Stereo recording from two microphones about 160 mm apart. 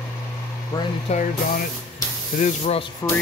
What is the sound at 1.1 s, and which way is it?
Speech, 50° left (ahead or behind).